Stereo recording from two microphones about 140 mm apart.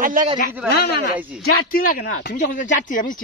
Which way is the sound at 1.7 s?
85° left.